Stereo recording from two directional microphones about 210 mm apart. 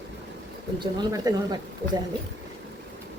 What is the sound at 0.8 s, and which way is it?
Speech, 20° right (ahead or behind).